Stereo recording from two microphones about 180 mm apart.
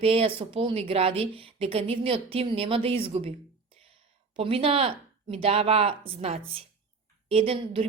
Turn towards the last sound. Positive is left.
turn(degrees=-30)  # may be behind; listen again after turning